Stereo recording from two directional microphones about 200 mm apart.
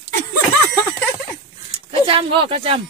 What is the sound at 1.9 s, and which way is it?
Speech, 25° right (ahead or behind).